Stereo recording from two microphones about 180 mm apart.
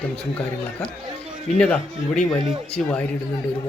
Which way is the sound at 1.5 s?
10° left (ahead or behind).